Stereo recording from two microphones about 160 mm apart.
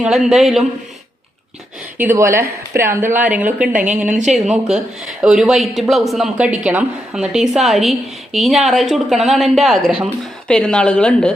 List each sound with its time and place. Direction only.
0.0 s a woman's voice: 5° right (ahead or behind)
2.0 s a woman's voice: 15° right (ahead or behind)
3.7 s a woman's voice: 50° right (ahead or behind)
4.3 s a woman's voice: centre (ahead or behind)